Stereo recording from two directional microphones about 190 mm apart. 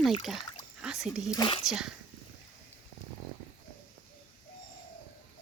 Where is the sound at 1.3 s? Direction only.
25° left (ahead or behind).